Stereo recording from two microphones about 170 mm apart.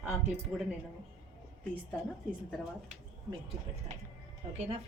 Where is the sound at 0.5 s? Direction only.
5° right (ahead or behind).